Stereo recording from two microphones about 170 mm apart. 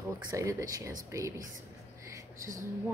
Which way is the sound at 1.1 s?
15° right (ahead or behind).